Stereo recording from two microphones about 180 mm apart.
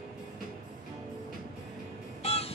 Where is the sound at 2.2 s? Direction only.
35° left (ahead or behind).